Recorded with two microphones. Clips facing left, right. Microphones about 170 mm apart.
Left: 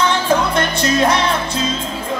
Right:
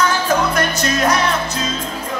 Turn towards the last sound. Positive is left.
turn(degrees=30)  # may be behind; listen again after turning